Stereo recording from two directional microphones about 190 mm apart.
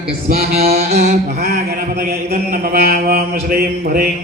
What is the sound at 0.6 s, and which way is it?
Mantra, 35° right (ahead or behind).